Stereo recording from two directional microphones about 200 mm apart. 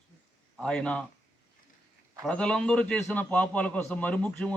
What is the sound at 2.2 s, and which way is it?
A man's voice, 5° left (ahead or behind).